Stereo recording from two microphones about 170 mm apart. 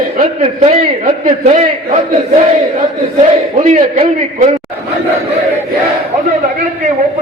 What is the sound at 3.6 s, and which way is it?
Speech, 40° right (ahead or behind).